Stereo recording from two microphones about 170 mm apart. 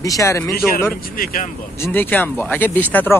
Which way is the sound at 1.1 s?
55° left (ahead or behind).